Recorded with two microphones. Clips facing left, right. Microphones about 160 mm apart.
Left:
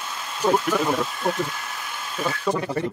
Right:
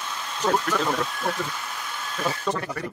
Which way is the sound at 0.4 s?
10° left (ahead or behind).